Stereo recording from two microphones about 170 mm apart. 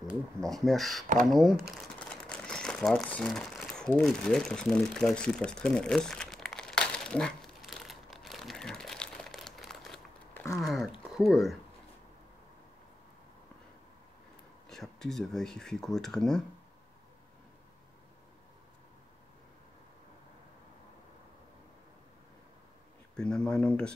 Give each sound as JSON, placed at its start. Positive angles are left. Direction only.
{"t": 0.4, "sound": "speech", "side_deg": 0}
{"t": 1.7, "sound": "crumpling", "side_deg": 0}
{"t": 10.6, "sound": "speech", "side_deg": 0}
{"t": 14.7, "sound": "speech", "side_deg": 0}
{"t": 23.1, "sound": "speech", "side_deg": 5}